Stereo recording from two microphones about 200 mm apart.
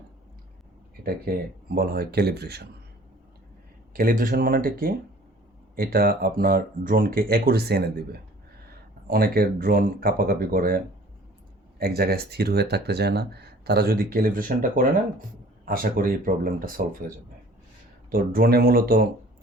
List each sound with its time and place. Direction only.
1.7 s speech: 50° right (ahead or behind)
3.9 s speech: 45° right (ahead or behind)
9.0 s speech: 45° right (ahead or behind)
18.1 s speech: 45° right (ahead or behind)